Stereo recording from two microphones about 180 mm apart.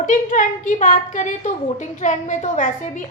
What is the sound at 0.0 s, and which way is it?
A woman's voice, 45° left (ahead or behind).